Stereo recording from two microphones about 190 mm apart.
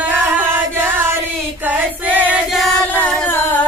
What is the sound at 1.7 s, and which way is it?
Choir, 10° right (ahead or behind).